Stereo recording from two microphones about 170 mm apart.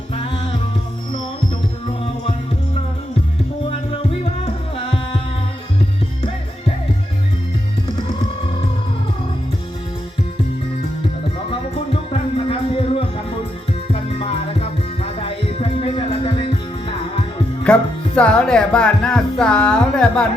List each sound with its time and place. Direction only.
0.1 s music: 30° left (ahead or behind)
11.7 s music: 35° left (ahead or behind)
17.6 s speech: 5° left (ahead or behind)